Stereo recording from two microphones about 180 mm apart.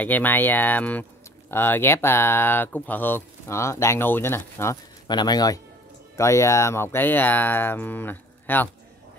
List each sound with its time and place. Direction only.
0.0 s speech: 10° left (ahead or behind)